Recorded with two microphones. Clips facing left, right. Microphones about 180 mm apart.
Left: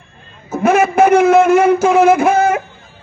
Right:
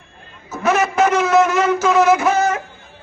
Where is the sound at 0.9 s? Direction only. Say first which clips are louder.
Left 6 dB; 55° left (ahead or behind).